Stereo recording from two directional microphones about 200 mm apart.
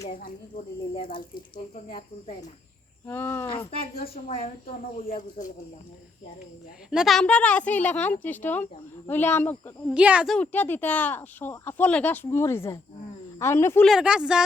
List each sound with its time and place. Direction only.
0.0 s speech: 40° left (ahead or behind)
3.1 s speech: 10° left (ahead or behind)
3.9 s speech: 50° left (ahead or behind)
4.3 s speech: 30° left (ahead or behind)
6.9 s speech: centre (ahead or behind)
9.9 s speech: 5° right (ahead or behind); by 13.8 s 10° left (ahead or behind)
13.8 s a woman's voice: 5° right (ahead or behind)